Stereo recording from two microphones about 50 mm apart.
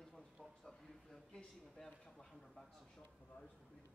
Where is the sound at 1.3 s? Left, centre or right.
Centre.